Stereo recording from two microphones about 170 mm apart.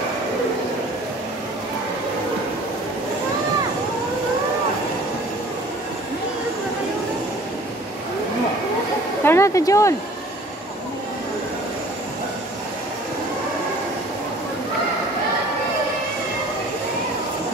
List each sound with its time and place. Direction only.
9.2 s speech: 15° left (ahead or behind)